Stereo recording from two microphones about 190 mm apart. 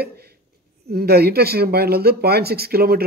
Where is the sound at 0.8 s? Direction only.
55° right (ahead or behind).